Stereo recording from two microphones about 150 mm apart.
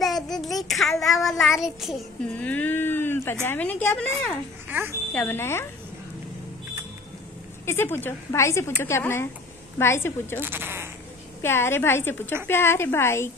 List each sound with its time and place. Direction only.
0.0 s child singing: centre (ahead or behind)
2.3 s speech: 10° left (ahead or behind)
4.6 s speech: 10° right (ahead or behind)
5.1 s speech: 10° left (ahead or behind)
7.6 s speech: 15° left (ahead or behind)
10.4 s speech: 15° right (ahead or behind)
11.4 s speech: 15° left (ahead or behind)